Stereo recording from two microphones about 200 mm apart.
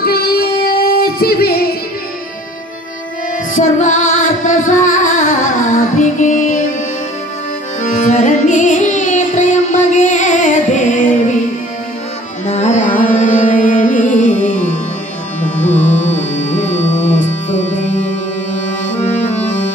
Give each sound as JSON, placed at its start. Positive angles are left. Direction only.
{"t": 0.0, "sound": "music", "side_deg": 50}
{"t": 3.5, "sound": "music", "side_deg": 40}
{"t": 7.8, "sound": "carnatic music", "side_deg": 40}
{"t": 12.4, "sound": "music", "side_deg": 35}
{"t": 16.3, "sound": "music", "side_deg": 35}